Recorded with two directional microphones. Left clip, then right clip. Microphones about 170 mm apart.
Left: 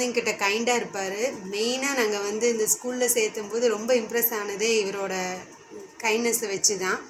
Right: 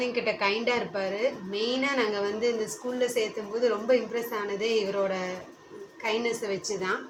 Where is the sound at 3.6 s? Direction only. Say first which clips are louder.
Left 1 dB; 60° left (ahead or behind).